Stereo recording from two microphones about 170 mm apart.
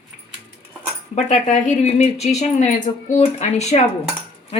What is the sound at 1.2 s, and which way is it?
Speech, 45° left (ahead or behind).